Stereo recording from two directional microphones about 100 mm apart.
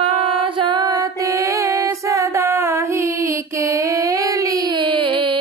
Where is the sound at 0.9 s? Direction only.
35° right (ahead or behind); by 5.4 s 55° right (ahead or behind).